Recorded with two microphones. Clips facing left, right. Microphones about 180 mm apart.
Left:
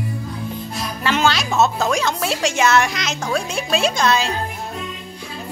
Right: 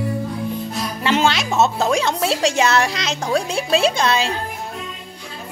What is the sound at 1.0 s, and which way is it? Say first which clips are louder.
Speech: right 1 dB; 25° right (ahead or behind).